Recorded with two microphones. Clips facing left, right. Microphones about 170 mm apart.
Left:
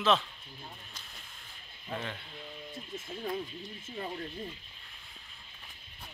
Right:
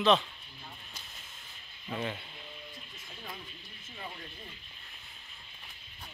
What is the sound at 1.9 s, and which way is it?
Speech, 10° right (ahead or behind).